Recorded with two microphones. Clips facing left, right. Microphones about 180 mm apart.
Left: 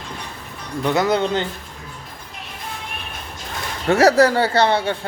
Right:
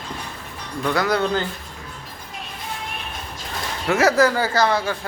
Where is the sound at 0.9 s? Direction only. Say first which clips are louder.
Left 2 dB; 20° left (ahead or behind).